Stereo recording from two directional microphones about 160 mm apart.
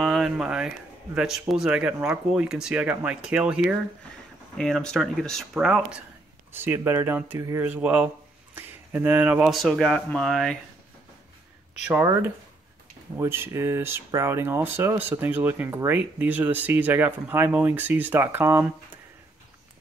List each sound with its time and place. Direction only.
0.0 s speech: centre (ahead or behind)
4.6 s speech: 5° left (ahead or behind)
6.5 s speech: 15° right (ahead or behind); by 10.6 s centre (ahead or behind)
11.9 s speech: 15° right (ahead or behind)